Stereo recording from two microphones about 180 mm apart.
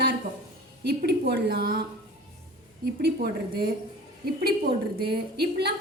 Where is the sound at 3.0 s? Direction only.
60° right (ahead or behind).